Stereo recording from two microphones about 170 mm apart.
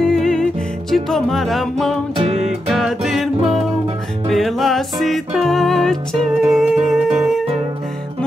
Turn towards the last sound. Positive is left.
turn(degrees=0)  # may be behind; listen again after turning